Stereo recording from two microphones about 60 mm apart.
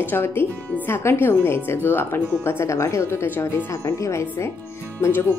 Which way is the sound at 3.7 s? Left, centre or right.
Left.